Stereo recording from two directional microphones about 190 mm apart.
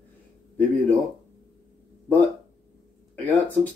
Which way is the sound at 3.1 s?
10° left (ahead or behind).